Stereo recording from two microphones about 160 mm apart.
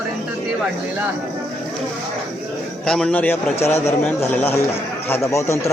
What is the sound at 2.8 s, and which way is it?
Speech, 5° left (ahead or behind).